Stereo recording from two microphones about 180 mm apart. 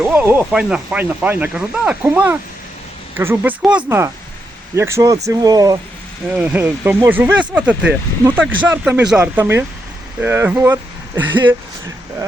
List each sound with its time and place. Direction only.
0.0 s speech: 10° right (ahead or behind)
6.2 s speech: 10° right (ahead or behind)